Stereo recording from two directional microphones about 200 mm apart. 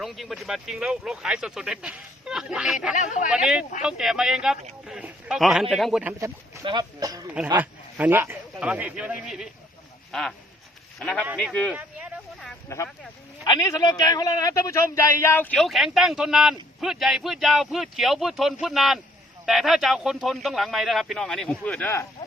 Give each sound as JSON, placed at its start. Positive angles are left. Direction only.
{"t": 0.0, "sound": "speech", "side_deg": 0}
{"t": 2.9, "sound": "speech", "side_deg": 40}
{"t": 3.2, "sound": "speech", "side_deg": -5}
{"t": 7.6, "sound": "a man's voice", "side_deg": -10}
{"t": 11.7, "sound": "a sound", "side_deg": -5}
{"t": 12.6, "sound": "a man's voice", "side_deg": 15}